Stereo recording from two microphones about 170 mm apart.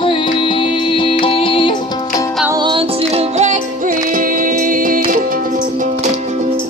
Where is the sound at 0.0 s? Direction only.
30° left (ahead or behind).